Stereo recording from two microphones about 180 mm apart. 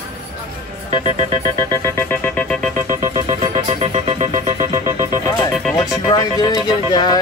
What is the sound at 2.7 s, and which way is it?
Music, 45° right (ahead or behind).